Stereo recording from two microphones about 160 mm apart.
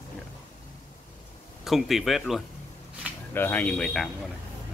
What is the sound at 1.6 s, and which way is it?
Speech, centre (ahead or behind).